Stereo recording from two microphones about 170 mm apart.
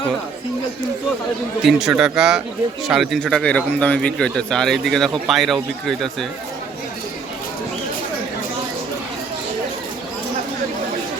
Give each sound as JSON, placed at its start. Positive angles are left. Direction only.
{"t": 1.6, "sound": "speech", "side_deg": -5}